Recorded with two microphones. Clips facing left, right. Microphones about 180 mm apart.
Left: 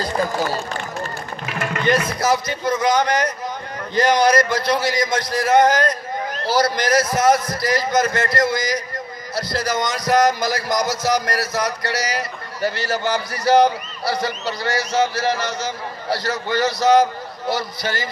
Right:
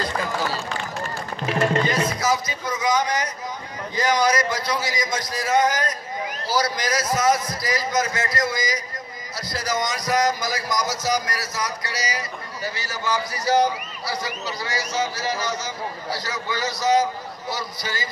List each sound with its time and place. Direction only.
0.0 s run: 40° left (ahead or behind)
1.4 s music: 30° right (ahead or behind)
2.0 s speech: 65° left (ahead or behind)